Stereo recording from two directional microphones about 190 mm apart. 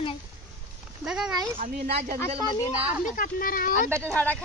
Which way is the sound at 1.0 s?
5° right (ahead or behind).